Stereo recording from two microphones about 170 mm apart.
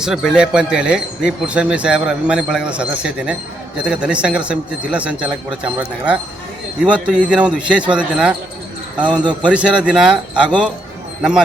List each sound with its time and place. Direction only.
0.0 s a man's voice: centre (ahead or behind)
9.0 s speech: 25° right (ahead or behind)
9.4 s speech: 5° right (ahead or behind)